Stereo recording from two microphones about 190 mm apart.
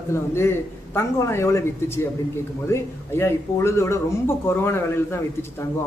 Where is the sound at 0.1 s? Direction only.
15° left (ahead or behind).